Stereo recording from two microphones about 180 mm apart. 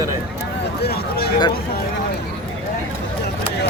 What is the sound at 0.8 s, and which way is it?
Speech, 60° left (ahead or behind).